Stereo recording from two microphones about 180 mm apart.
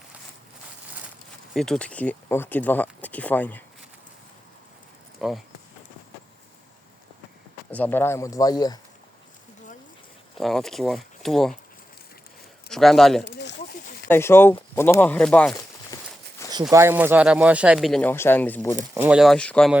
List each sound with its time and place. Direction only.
1.5 s speech: centre (ahead or behind)
5.2 s speech: centre (ahead or behind)
7.7 s speech: 10° left (ahead or behind)
10.3 s speech: centre (ahead or behind)
12.6 s a man's voice: centre (ahead or behind)
13.2 s a sound: 70° left (ahead or behind)
14.1 s speech: 15° left (ahead or behind)
15.9 s walk: 20° left (ahead or behind)
16.4 s a sound: 15° left (ahead or behind)
16.7 s speech: 10° right (ahead or behind)
18.1 s speech: 10° left (ahead or behind)
18.9 s speech: 5° right (ahead or behind)